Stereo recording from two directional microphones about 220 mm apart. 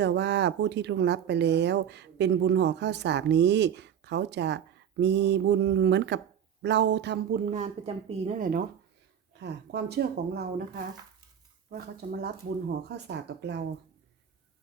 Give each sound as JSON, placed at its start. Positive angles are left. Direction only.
{"t": 0.0, "sound": "speech", "side_deg": -50}
{"t": 7.5, "sound": "speech", "side_deg": -30}
{"t": 9.4, "sound": "speech", "side_deg": -50}